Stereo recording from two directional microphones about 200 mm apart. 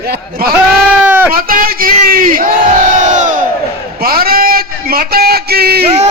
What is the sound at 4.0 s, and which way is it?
A man's voice, 50° right (ahead or behind).